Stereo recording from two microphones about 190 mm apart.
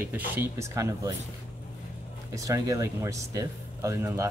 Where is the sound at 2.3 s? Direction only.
15° right (ahead or behind).